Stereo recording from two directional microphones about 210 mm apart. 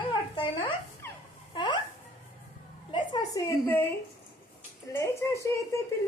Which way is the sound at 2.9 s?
20° left (ahead or behind).